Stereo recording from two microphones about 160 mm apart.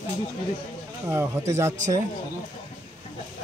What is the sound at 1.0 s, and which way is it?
Speech, 15° right (ahead or behind).